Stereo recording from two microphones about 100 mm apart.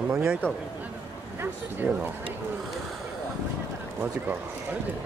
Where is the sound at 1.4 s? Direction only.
15° right (ahead or behind).